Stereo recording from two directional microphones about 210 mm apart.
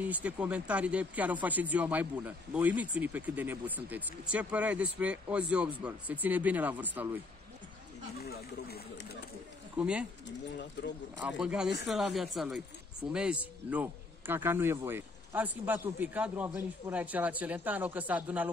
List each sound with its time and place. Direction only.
0.0 s speech: 5° right (ahead or behind)
8.2 s speech: 50° left (ahead or behind)
9.8 s speech: 5° right (ahead or behind)
10.2 s speech: 55° left (ahead or behind)
11.1 s speech: 5° right (ahead or behind)